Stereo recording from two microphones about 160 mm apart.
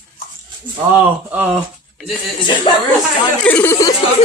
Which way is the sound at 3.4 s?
10° left (ahead or behind).